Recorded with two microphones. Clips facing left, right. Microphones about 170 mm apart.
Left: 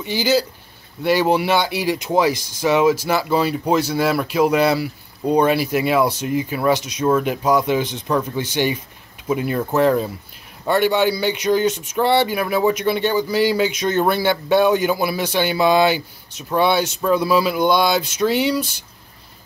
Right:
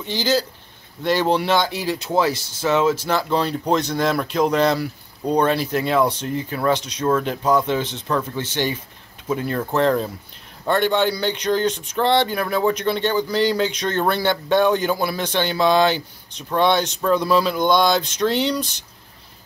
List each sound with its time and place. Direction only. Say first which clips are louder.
0.0 s speech: left 2 dB; 10° left (ahead or behind)